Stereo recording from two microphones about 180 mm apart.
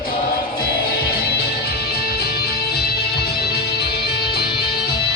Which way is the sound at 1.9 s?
60° left (ahead or behind).